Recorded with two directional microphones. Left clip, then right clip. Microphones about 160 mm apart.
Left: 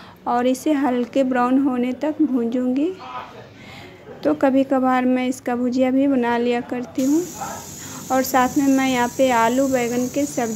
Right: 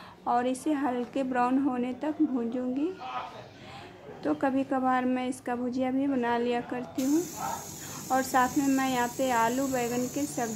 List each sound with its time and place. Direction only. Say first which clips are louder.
0.2 s a woman's voice: left 8 dB; 20° left (ahead or behind)
4.2 s a woman's voice: left 11 dB; 20° left (ahead or behind)
8.1 s a woman's voice: left 7 dB; 20° left (ahead or behind)